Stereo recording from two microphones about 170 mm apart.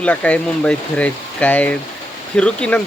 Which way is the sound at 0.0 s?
10° left (ahead or behind).